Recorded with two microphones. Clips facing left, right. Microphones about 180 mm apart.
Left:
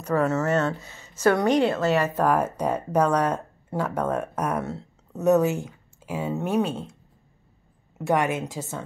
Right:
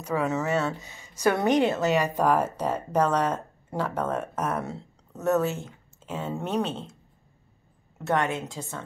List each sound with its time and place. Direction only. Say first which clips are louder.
0.0 s a woman's voice: left 4 dB; 10° right (ahead or behind)
2.5 s speech: left 2 dB; 10° left (ahead or behind)
4.6 s a sound: left 3 dB; centre (ahead or behind)
5.2 s speech: left 5 dB; 15° left (ahead or behind)
8.1 s a woman's voice: left 3 dB; 15° left (ahead or behind)